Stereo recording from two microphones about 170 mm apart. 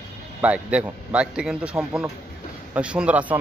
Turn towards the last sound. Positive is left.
turn(degrees=-10)  # may be behind; listen again after turning